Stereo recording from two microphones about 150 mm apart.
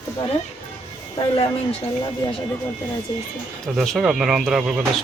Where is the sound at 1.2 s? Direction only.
35° left (ahead or behind).